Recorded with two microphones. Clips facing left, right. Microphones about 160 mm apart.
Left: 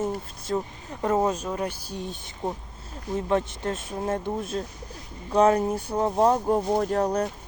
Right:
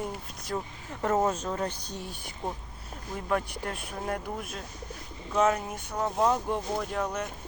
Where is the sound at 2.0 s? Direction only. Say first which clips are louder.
Left 5 dB; 20° left (ahead or behind).